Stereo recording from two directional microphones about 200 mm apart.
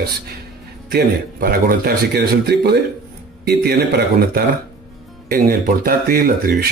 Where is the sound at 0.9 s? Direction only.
50° right (ahead or behind).